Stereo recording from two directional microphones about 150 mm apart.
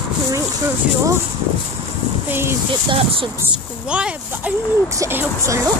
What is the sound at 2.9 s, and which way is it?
Speech, 35° right (ahead or behind).